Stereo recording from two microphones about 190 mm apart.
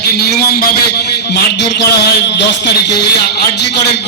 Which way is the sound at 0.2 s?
55° left (ahead or behind).